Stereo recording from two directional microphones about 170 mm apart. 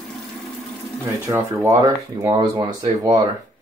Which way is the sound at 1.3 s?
15° right (ahead or behind).